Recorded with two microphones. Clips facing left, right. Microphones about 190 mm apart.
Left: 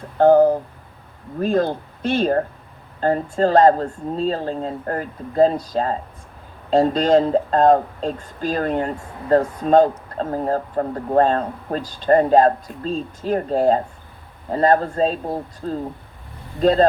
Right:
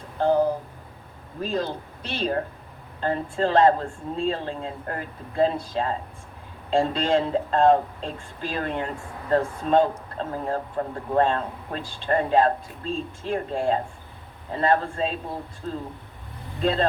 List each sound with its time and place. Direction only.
0.2 s speech: 55° left (ahead or behind)